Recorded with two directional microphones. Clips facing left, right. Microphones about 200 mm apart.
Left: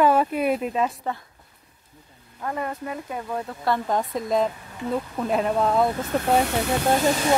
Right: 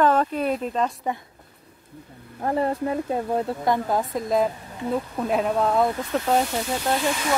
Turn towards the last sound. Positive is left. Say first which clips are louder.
# left 4 dB
turn(degrees=40)  # may be behind; listen again after turning